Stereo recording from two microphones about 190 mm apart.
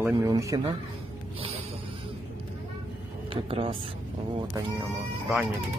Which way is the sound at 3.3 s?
30° right (ahead or behind).